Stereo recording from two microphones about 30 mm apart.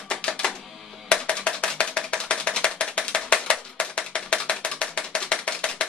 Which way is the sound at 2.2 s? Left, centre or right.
Left.